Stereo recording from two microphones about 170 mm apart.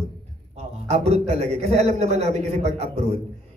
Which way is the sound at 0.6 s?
40° right (ahead or behind).